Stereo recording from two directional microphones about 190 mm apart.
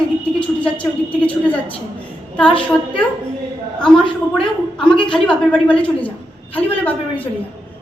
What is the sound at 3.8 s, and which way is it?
A woman's voice, 5° left (ahead or behind).